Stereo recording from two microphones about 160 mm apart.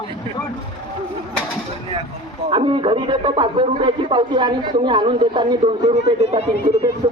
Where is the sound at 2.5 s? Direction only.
30° right (ahead or behind).